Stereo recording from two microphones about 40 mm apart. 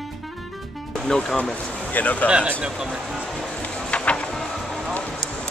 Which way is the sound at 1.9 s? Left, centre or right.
Left.